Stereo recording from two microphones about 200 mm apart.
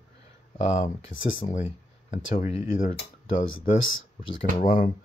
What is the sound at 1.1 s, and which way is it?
Speech, 75° left (ahead or behind).